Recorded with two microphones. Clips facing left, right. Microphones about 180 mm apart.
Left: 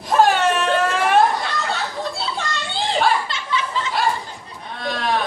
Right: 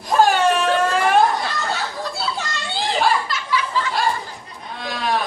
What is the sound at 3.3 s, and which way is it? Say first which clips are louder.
Chuckle: right 1 dB; 25° left (ahead or behind).